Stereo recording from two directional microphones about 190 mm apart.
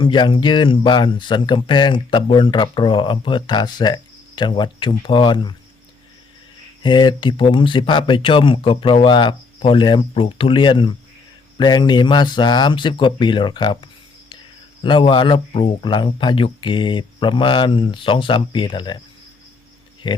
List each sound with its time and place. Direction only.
0.0 s speech: 25° left (ahead or behind)
6.8 s speech: 25° left (ahead or behind)
20.0 s speech: 25° left (ahead or behind)